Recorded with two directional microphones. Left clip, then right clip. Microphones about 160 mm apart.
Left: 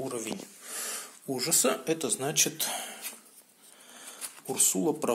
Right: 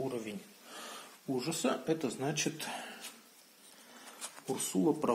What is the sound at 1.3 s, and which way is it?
Speech, 15° left (ahead or behind).